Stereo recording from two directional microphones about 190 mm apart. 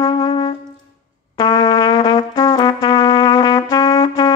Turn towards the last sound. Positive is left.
turn(degrees=20)  # may be behind; listen again after turning